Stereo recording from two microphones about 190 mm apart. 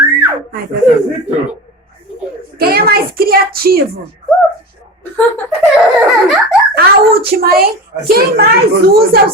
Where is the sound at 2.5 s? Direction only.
55° right (ahead or behind).